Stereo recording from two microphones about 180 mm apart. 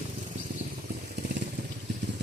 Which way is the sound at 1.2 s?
70° right (ahead or behind).